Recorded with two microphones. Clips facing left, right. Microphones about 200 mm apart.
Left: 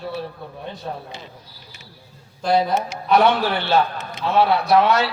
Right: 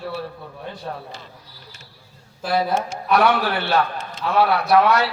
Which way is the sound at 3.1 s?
25° left (ahead or behind).